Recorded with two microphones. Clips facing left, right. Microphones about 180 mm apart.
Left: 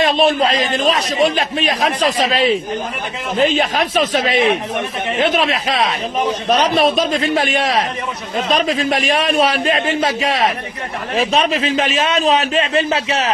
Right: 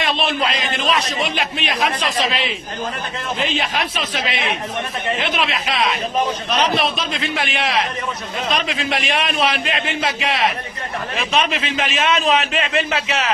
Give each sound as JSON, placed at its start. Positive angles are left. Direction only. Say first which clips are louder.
{"t": 0.0, "sound": "a man's voice", "louder": "left 7 dB", "side_deg": 45}